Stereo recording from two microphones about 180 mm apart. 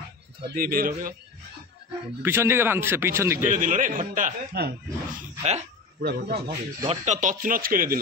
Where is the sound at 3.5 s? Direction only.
45° right (ahead or behind).